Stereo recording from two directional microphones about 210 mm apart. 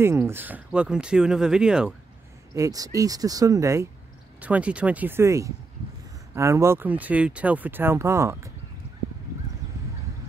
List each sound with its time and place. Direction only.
0.0 s speech: 10° right (ahead or behind)
2.5 s speech: 15° right (ahead or behind)